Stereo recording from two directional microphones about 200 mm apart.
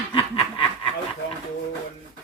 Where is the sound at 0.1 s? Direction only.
25° left (ahead or behind).